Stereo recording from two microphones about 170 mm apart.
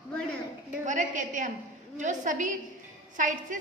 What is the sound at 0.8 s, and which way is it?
A woman's voice, 50° right (ahead or behind).